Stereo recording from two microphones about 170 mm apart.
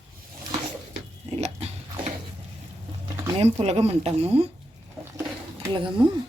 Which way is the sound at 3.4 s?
35° right (ahead or behind).